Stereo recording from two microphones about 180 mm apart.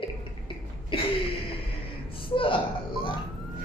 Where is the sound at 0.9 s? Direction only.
30° left (ahead or behind).